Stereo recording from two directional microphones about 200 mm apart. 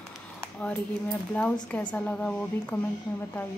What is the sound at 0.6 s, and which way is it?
A woman's voice, 5° left (ahead or behind).